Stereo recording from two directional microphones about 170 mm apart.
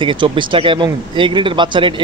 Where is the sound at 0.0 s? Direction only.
30° right (ahead or behind).